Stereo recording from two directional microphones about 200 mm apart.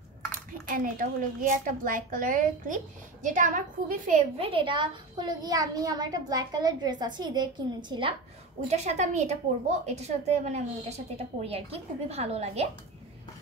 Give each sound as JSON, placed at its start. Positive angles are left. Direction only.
{"t": 0.7, "sound": "a woman's voice", "side_deg": -45}
{"t": 4.4, "sound": "a child's voice", "side_deg": -25}
{"t": 8.6, "sound": "a woman's voice", "side_deg": -35}